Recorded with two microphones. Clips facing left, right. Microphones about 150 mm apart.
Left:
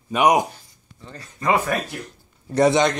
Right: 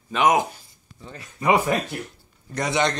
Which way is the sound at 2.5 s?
30° left (ahead or behind).